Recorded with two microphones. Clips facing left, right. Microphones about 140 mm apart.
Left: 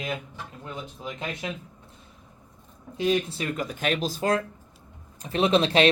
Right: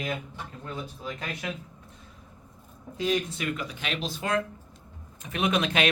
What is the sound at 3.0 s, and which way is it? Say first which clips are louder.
Speech: left 3 dB; 25° left (ahead or behind).